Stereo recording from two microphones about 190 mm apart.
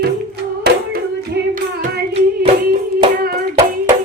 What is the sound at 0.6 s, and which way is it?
Hands, 55° right (ahead or behind).